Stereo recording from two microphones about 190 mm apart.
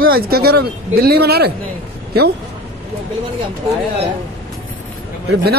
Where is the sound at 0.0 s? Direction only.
50° right (ahead or behind).